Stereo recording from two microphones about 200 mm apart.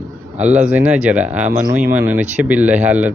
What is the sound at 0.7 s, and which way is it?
Speech, 5° right (ahead or behind).